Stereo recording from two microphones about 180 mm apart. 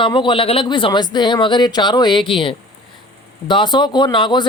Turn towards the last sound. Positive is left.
turn(degrees=25)  # may be behind; listen again after turning